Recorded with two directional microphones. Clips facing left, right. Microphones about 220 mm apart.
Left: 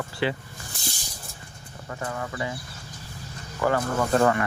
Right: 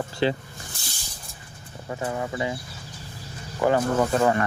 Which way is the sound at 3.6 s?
20° right (ahead or behind).